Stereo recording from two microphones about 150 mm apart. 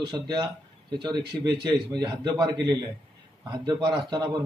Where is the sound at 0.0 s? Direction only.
30° right (ahead or behind).